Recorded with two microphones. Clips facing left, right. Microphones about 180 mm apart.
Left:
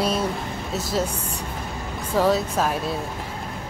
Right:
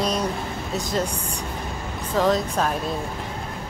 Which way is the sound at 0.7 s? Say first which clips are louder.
Even; 5° left (ahead or behind).